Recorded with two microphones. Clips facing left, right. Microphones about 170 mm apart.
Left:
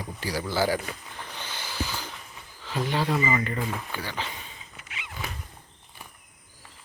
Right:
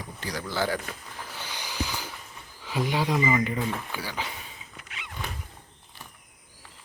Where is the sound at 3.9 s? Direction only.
10° right (ahead or behind).